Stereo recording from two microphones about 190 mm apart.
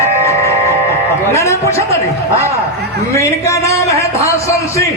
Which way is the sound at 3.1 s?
15° left (ahead or behind).